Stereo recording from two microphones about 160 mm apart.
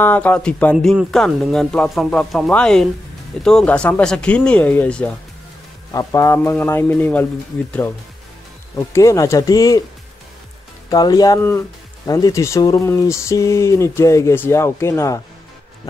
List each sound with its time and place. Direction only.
0.0 s speech: 10° left (ahead or behind)
5.9 s speech: 20° left (ahead or behind)
8.7 s speech: 20° left (ahead or behind)
10.9 s speech: 25° left (ahead or behind)